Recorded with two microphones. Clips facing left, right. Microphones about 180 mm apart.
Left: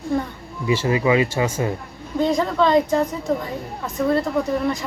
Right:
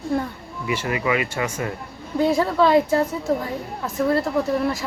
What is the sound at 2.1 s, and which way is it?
A woman's voice, 5° right (ahead or behind).